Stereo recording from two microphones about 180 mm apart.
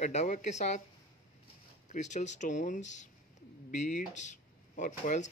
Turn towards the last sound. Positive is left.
turn(degrees=45)  # may be behind; listen again after turning